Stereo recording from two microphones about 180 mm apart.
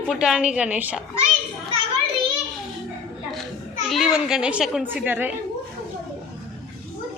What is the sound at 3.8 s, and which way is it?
A child's voice, centre (ahead or behind).